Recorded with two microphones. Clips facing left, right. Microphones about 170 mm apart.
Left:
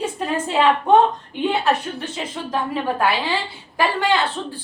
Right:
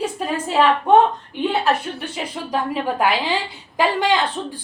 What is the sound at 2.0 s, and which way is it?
A woman's voice, 15° right (ahead or behind).